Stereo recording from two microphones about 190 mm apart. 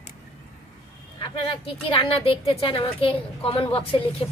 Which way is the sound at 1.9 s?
25° left (ahead or behind).